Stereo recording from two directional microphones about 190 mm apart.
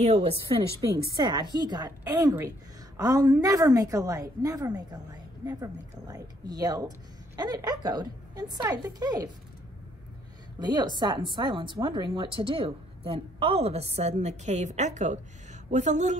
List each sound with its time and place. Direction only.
0.0 s a woman's voice: 35° right (ahead or behind)
10.6 s a woman's voice: 20° right (ahead or behind); by 16.2 s 40° right (ahead or behind)